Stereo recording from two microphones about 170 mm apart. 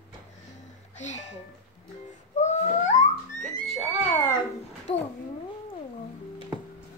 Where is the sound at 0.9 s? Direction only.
45° left (ahead or behind).